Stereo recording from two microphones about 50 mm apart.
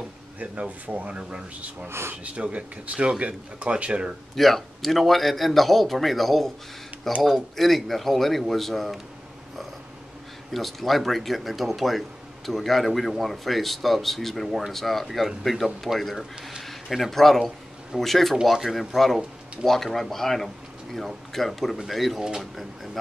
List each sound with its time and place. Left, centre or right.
0.4 s speech: right
1.9 s speech: right
2.2 s speech: right
4.4 s speech: centre
10.5 s a man's voice: centre